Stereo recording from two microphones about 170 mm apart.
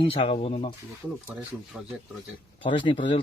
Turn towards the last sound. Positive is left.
turn(degrees=30)  # may be behind; listen again after turning